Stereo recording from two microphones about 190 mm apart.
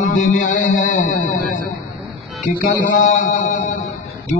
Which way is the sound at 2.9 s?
40° left (ahead or behind).